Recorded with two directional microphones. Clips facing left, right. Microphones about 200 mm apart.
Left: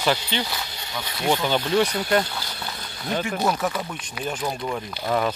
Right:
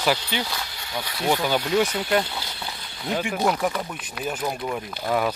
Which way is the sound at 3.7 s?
5° right (ahead or behind).